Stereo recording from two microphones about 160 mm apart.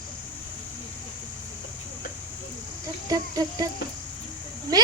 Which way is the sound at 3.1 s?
25° right (ahead or behind).